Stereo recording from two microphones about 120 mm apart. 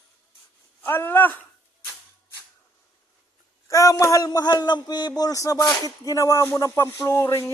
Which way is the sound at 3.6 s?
25° left (ahead or behind).